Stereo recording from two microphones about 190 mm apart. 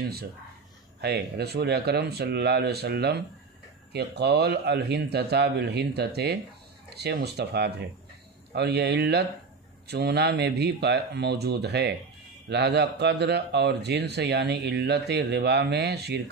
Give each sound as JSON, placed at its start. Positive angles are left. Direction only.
{"t": 1.0, "sound": "speech", "side_deg": -60}